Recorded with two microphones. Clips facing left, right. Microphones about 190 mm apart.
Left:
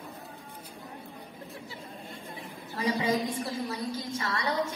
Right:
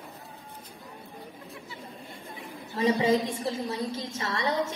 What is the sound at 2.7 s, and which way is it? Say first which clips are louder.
A woman's voice: right 5 dB; 25° right (ahead or behind).